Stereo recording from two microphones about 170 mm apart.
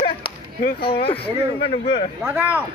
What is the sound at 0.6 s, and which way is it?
Speech, 70° left (ahead or behind).